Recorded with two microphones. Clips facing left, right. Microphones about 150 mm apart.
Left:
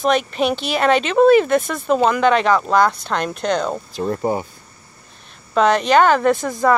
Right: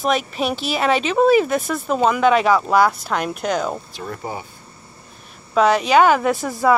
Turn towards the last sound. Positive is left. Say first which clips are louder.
# left 1 dB
turn(degrees=-5)  # may be behind; listen again after turning